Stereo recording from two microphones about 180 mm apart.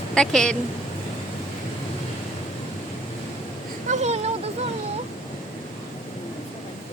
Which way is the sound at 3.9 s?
40° right (ahead or behind).